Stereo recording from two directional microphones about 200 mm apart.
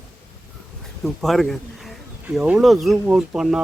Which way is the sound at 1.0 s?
Centre (ahead or behind).